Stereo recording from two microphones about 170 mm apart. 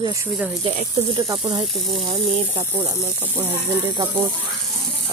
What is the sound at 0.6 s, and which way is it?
Speech, 35° right (ahead or behind).